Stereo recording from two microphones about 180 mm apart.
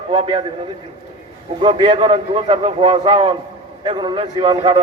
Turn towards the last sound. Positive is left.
turn(degrees=-30)  # may be behind; listen again after turning